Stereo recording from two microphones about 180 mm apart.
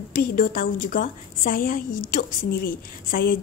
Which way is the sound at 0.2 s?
50° left (ahead or behind).